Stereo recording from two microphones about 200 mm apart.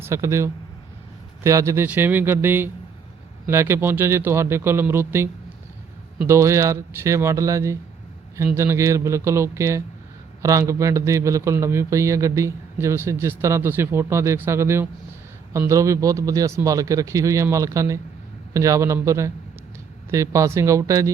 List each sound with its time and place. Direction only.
0.0 s speech: 15° right (ahead or behind)